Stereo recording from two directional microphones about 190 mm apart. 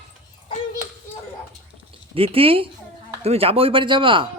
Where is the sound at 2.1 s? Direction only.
30° right (ahead or behind).